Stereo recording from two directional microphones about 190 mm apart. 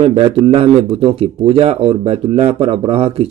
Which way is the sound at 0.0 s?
30° right (ahead or behind).